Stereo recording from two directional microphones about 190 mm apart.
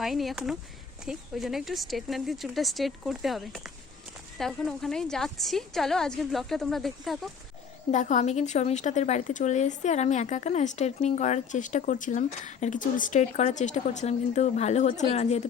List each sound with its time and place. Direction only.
0.0 s a woman's voice: centre (ahead or behind)
7.9 s speech: 40° left (ahead or behind)